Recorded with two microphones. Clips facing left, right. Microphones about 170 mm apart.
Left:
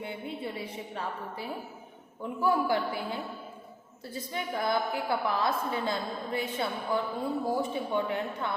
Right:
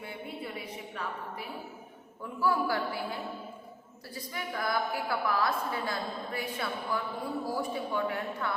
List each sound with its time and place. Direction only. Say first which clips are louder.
0.0 s a woman's voice: left 3 dB; 25° left (ahead or behind)